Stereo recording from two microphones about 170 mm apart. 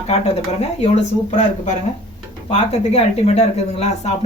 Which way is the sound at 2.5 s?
40° left (ahead or behind).